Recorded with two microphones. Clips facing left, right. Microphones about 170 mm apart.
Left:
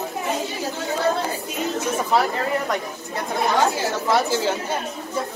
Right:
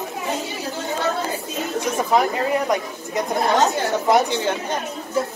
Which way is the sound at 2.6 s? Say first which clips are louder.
Right 3 dB; 20° right (ahead or behind).